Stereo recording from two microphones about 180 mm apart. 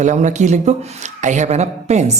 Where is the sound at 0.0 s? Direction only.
40° right (ahead or behind).